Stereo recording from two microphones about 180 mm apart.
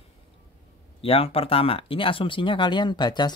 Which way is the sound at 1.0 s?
30° left (ahead or behind).